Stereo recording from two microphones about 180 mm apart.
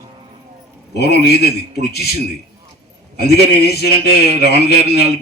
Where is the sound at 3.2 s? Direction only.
60° left (ahead or behind).